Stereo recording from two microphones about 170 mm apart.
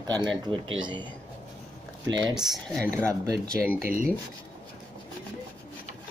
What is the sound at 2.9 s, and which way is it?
Speech, 15° right (ahead or behind).